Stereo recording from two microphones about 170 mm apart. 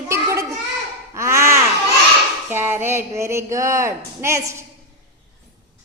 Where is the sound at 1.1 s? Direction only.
15° right (ahead or behind).